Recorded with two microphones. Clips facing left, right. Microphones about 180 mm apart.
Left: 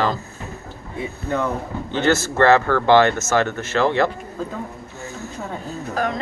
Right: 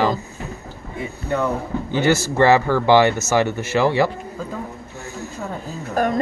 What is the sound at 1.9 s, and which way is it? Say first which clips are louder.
Speech: right 1 dB; 10° right (ahead or behind).